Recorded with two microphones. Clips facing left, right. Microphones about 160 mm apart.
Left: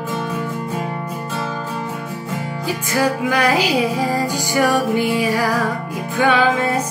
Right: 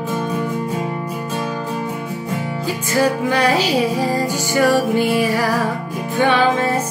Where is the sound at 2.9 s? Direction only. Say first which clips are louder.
Right 1 dB; 10° left (ahead or behind).